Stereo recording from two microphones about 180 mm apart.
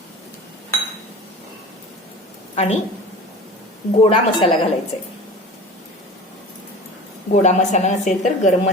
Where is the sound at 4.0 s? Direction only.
35° left (ahead or behind).